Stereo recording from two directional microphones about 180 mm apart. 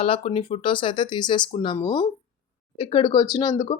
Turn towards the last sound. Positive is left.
turn(degrees=25)  # may be behind; listen again after turning